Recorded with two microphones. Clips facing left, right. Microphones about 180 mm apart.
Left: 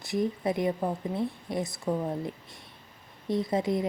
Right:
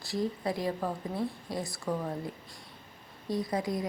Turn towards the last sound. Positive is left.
turn(degrees=25)  # may be behind; listen again after turning